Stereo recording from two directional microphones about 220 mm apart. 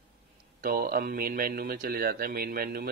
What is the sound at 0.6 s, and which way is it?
A man's voice, 40° right (ahead or behind).